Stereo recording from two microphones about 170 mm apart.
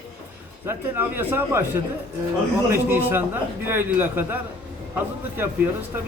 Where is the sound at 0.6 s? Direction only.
15° right (ahead or behind).